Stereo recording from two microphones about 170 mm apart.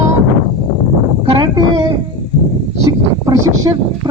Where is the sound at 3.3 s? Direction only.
20° right (ahead or behind).